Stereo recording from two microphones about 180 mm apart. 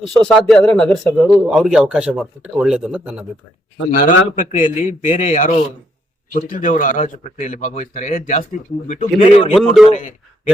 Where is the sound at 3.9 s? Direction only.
45° left (ahead or behind).